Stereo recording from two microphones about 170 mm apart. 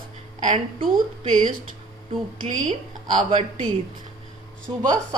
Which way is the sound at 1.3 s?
50° right (ahead or behind).